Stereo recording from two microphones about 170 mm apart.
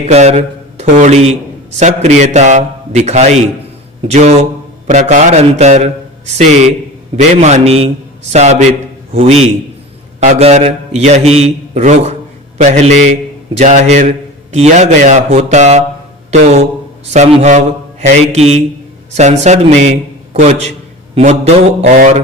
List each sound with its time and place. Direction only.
0.0 s a man's voice: 40° right (ahead or behind)